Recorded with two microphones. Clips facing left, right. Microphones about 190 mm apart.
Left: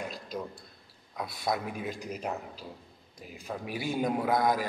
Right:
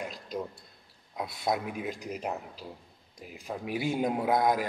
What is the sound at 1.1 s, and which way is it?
A man's voice, 20° right (ahead or behind).